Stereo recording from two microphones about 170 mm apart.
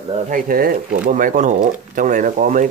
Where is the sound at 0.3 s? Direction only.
55° right (ahead or behind).